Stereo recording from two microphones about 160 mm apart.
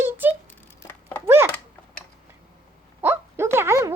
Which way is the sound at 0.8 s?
15° left (ahead or behind).